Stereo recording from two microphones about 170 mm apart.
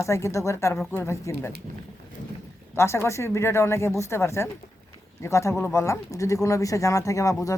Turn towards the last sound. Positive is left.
turn(degrees=20)  # may be behind; listen again after turning